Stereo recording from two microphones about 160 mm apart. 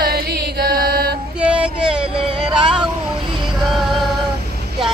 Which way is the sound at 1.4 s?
5° right (ahead or behind).